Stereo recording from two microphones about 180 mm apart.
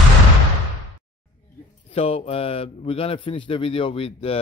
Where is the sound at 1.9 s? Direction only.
35° left (ahead or behind).